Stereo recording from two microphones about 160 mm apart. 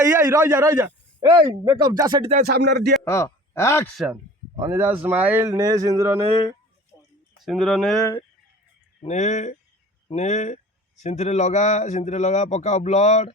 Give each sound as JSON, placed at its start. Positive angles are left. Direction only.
{"t": 0.0, "sound": "speech", "side_deg": -20}
{"t": 1.3, "sound": "speech", "side_deg": -30}
{"t": 2.4, "sound": "speech", "side_deg": -85}
{"t": 3.0, "sound": "speech", "side_deg": 15}
{"t": 4.6, "sound": "a man's voice", "side_deg": -15}
{"t": 6.9, "sound": "a sound", "side_deg": -20}
{"t": 7.4, "sound": "speech", "side_deg": 0}
{"t": 9.0, "sound": "a man's voice", "side_deg": 45}